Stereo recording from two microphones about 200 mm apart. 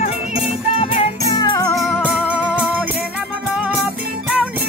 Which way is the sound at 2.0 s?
5° right (ahead or behind).